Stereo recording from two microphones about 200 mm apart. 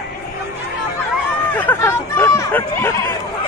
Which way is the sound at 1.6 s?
10° left (ahead or behind).